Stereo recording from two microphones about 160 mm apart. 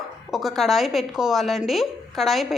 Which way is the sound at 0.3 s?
Centre (ahead or behind).